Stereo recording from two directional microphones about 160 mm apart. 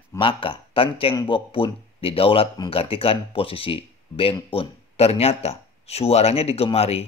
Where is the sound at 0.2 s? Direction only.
30° left (ahead or behind).